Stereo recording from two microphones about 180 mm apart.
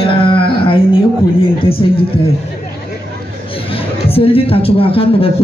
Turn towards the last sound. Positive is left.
turn(degrees=30)  # may be behind; listen again after turning